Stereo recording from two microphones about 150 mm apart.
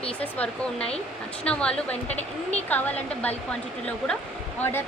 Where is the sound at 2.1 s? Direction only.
45° left (ahead or behind).